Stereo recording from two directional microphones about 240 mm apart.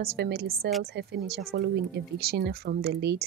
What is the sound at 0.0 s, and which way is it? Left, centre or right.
A woman's voice, right.